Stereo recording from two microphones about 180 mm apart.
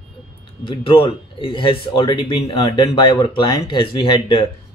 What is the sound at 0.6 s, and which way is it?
Speech, 30° left (ahead or behind).